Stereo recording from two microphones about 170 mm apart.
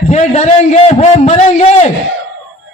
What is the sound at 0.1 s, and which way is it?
A man's voice, 40° left (ahead or behind).